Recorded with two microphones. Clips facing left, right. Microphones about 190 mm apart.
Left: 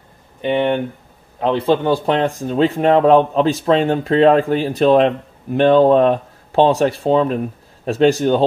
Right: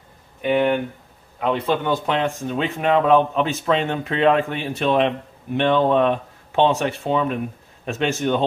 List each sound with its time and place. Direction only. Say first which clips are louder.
0.4 s speech: left 2 dB; 25° left (ahead or behind)